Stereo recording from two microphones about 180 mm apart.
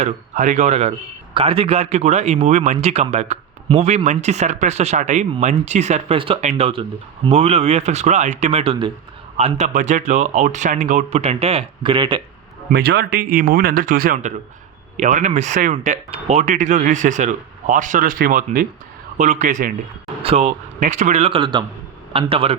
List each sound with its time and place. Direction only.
0.0 s a man's voice: 40° right (ahead or behind); by 12.2 s 25° right (ahead or behind)
12.7 s a man's voice: 65° right (ahead or behind); by 22.5 s 30° right (ahead or behind)